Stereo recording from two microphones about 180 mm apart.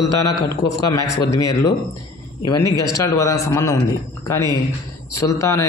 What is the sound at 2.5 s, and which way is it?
A man's voice, 20° left (ahead or behind).